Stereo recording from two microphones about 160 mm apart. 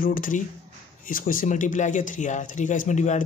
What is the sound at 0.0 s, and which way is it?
Speech, 60° left (ahead or behind).